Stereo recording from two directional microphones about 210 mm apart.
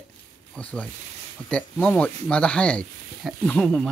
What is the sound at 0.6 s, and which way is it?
Speech, 5° left (ahead or behind).